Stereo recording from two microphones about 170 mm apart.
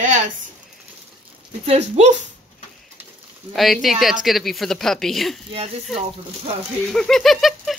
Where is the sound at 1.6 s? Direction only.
40° right (ahead or behind).